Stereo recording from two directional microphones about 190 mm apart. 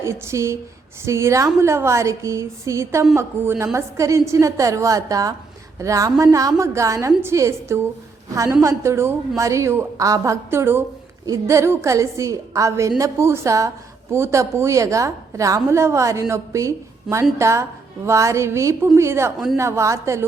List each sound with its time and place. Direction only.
0.0 s a woman's voice: 15° right (ahead or behind)